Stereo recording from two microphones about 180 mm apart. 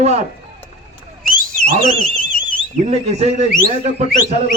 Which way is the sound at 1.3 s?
50° right (ahead or behind).